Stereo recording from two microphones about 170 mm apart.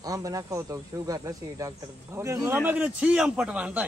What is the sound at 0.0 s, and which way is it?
A man's voice, 20° right (ahead or behind).